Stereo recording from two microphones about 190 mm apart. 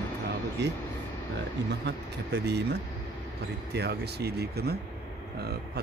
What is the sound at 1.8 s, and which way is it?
Speech, 60° right (ahead or behind).